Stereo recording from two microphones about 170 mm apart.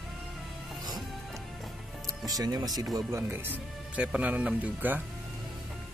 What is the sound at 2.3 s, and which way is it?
Speech, 20° right (ahead or behind).